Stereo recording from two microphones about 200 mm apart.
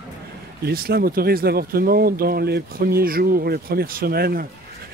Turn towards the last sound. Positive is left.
turn(degrees=-50)  # may be behind; listen again after turning